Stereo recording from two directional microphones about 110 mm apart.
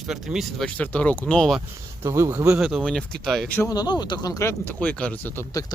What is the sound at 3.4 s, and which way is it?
Speech, 15° left (ahead or behind).